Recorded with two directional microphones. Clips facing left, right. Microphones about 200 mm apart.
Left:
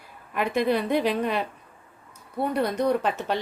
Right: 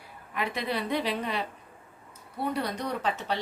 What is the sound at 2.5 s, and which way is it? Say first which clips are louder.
Speech: left 8 dB; 55° left (ahead or behind).